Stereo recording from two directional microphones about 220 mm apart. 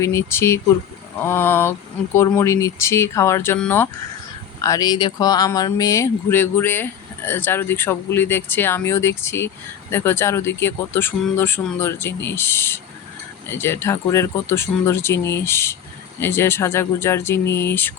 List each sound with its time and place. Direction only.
0.0 s speech: 15° left (ahead or behind)